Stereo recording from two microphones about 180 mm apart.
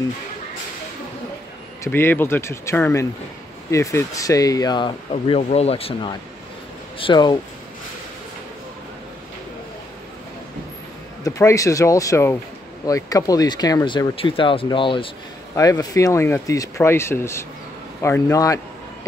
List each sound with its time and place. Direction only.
1.9 s speech: 10° left (ahead or behind)
5.1 s speech: 35° left (ahead or behind)
7.0 s speech: 25° left (ahead or behind)
11.2 s speech: 20° left (ahead or behind)